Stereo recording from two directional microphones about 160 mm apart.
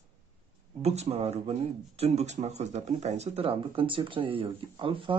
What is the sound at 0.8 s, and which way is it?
Speech, 40° right (ahead or behind).